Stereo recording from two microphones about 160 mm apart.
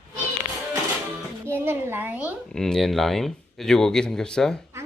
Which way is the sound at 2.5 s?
5° left (ahead or behind).